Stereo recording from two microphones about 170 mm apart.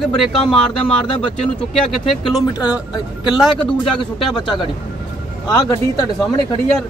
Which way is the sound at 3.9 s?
30° left (ahead or behind).